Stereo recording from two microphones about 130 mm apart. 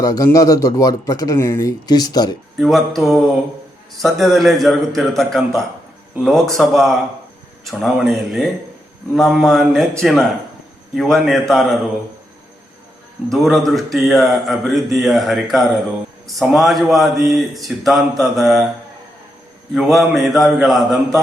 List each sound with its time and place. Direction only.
0.0 s a man's voice: 25° left (ahead or behind)
2.6 s speech: centre (ahead or behind)
13.3 s speech: centre (ahead or behind)
19.7 s speech: centre (ahead or behind)